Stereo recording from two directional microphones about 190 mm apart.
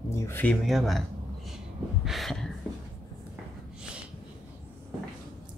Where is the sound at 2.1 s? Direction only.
Centre (ahead or behind).